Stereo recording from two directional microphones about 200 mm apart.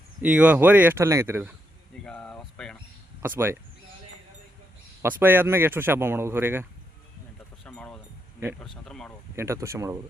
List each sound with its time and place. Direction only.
0.2 s speech: 5° right (ahead or behind)
2.0 s a sound: 5° left (ahead or behind)
3.2 s speech: 10° right (ahead or behind)
5.0 s speech: 10° right (ahead or behind)
7.6 s a sound: 5° left (ahead or behind)
8.6 s speech: centre (ahead or behind)
9.3 s speech: 15° right (ahead or behind)